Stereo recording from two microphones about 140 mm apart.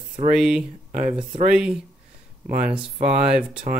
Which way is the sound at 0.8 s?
50° right (ahead or behind).